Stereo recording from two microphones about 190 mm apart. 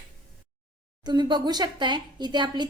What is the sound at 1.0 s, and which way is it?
Speech, 20° right (ahead or behind).